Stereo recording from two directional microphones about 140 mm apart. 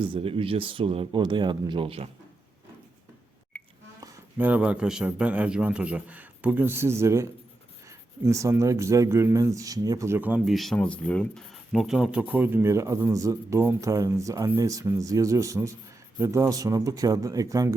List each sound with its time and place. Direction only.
0.0 s speech: 40° right (ahead or behind)
4.4 s a man's voice: 10° right (ahead or behind)